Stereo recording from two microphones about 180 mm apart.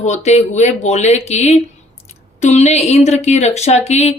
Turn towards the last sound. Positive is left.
turn(degrees=35)  # may be behind; listen again after turning